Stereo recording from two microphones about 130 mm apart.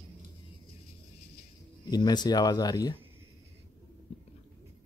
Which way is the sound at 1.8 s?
30° left (ahead or behind).